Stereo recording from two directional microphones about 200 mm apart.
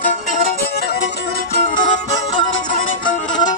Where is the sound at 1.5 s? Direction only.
45° left (ahead or behind).